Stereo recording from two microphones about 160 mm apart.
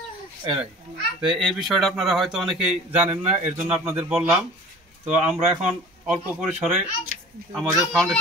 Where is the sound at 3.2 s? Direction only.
45° right (ahead or behind).